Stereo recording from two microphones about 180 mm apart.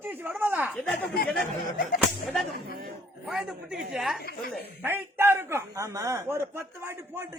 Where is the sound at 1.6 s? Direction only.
50° left (ahead or behind).